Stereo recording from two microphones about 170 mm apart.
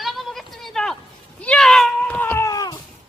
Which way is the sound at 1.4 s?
5° left (ahead or behind).